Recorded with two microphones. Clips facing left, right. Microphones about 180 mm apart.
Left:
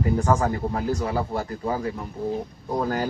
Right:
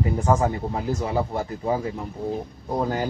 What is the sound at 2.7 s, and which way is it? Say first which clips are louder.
Speech: even; 20° right (ahead or behind).